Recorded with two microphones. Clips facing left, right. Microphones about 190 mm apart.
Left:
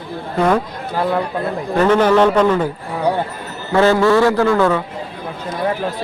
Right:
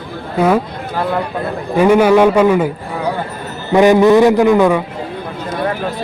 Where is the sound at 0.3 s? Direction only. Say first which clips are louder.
Right 2 dB; 5° right (ahead or behind).